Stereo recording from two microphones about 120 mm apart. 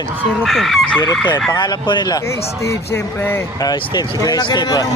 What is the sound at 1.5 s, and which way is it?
Fowl, 40° left (ahead or behind).